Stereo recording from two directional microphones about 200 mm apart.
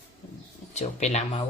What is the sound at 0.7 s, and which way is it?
Speech, 35° left (ahead or behind).